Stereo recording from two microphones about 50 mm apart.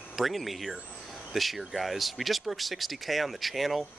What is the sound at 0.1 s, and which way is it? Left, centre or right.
Speech, centre.